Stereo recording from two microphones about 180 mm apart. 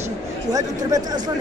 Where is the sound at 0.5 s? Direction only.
20° right (ahead or behind).